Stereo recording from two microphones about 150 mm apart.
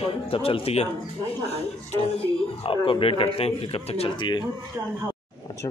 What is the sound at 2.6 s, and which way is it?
Speech, 35° left (ahead or behind).